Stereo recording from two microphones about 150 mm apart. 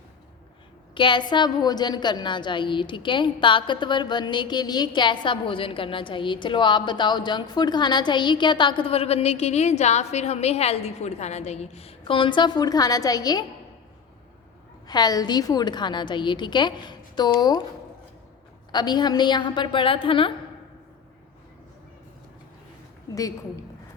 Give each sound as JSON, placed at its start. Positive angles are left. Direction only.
{"t": 0.9, "sound": "a woman's voice", "side_deg": 30}
{"t": 14.8, "sound": "a woman's voice", "side_deg": 25}
{"t": 18.7, "sound": "a woman's voice", "side_deg": 30}
{"t": 23.1, "sound": "a woman's voice", "side_deg": 25}